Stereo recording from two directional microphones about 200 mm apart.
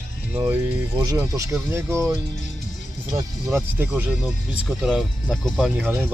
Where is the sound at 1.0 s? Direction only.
15° right (ahead or behind).